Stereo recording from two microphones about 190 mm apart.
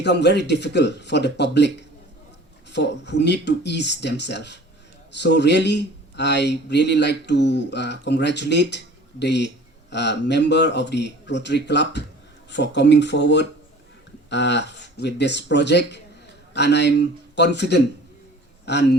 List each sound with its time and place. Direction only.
0.0 s speech: 65° left (ahead or behind)
2.7 s speech: 65° left (ahead or behind)